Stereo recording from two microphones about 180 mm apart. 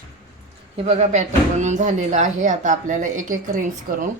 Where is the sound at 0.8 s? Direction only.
35° right (ahead or behind).